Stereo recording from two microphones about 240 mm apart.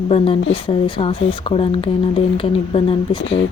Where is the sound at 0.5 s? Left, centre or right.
Left.